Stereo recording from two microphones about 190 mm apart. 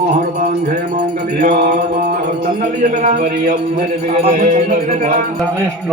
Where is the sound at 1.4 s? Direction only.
45° right (ahead or behind).